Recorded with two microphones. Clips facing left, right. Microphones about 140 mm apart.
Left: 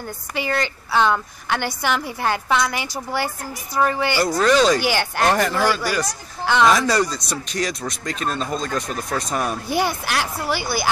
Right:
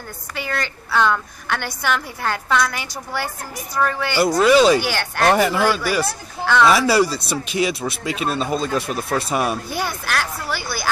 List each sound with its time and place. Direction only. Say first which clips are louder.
0.4 s a woman's voice: left 3 dB; 10° left (ahead or behind)
4.2 s speech: right 4 dB; 10° right (ahead or behind)
4.8 s a woman's voice: even; 10° left (ahead or behind)
5.3 s speech: right 4 dB; 10° right (ahead or behind)
6.4 s speech: right 1 dB; 15° left (ahead or behind)
6.7 s speech: right 2 dB; 5° right (ahead or behind)
9.7 s a woman's voice: left 3 dB; 10° left (ahead or behind)